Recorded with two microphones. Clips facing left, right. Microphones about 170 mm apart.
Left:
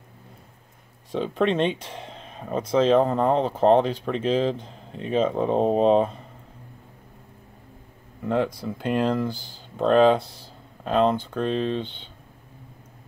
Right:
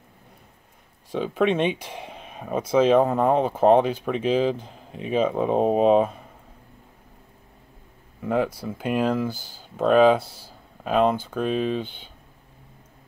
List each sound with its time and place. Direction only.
1.1 s speech: 5° right (ahead or behind)
8.2 s speech: 5° right (ahead or behind)